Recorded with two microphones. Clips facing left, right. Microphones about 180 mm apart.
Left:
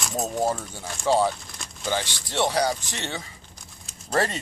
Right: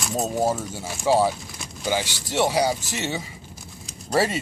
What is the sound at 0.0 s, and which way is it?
Speech, centre (ahead or behind).